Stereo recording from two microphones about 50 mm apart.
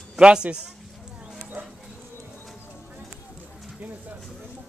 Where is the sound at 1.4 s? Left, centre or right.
Right.